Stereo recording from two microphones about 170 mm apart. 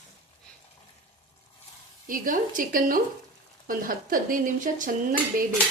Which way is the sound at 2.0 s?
55° right (ahead or behind).